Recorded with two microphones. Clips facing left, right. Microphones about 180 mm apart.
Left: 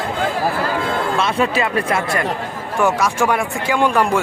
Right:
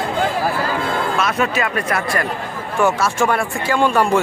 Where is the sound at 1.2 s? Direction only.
30° left (ahead or behind).